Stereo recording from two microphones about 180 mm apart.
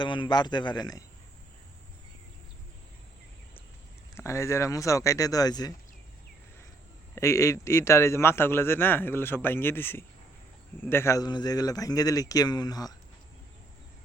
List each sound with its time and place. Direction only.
0.0 s a man's voice: 25° left (ahead or behind)
4.2 s a man's voice: 15° left (ahead or behind)
7.2 s a man's voice: 15° left (ahead or behind)